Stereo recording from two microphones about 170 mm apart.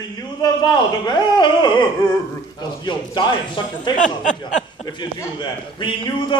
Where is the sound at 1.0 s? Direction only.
25° left (ahead or behind).